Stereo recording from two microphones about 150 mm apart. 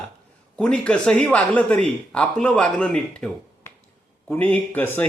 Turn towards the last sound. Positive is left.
turn(degrees=10)  # may be behind; listen again after turning